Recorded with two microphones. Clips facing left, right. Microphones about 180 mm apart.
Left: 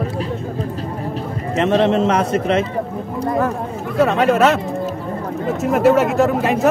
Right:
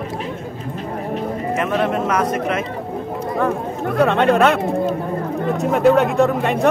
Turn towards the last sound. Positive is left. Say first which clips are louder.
# left 1 dB
turn(degrees=0)  # may be behind; listen again after turning